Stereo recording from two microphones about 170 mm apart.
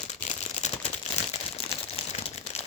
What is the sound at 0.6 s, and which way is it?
Crumpling, 45° left (ahead or behind).